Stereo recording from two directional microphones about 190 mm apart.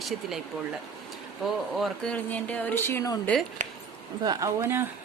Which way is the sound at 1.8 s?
Centre (ahead or behind).